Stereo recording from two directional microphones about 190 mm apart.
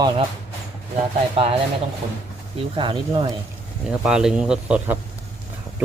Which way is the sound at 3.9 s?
5° right (ahead or behind).